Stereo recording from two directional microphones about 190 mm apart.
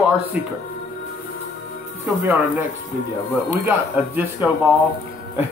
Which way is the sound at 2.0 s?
10° right (ahead or behind).